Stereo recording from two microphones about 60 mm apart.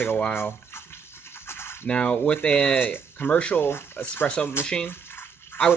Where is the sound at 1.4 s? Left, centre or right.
Left.